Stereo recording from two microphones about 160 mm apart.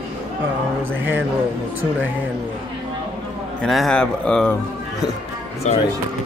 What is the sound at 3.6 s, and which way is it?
Speech, centre (ahead or behind).